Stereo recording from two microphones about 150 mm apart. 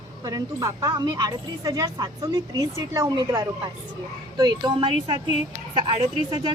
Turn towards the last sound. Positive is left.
turn(degrees=-35)  # may be behind; listen again after turning